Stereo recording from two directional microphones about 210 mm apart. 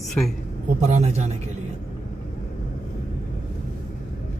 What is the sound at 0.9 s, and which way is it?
Speech, 30° right (ahead or behind).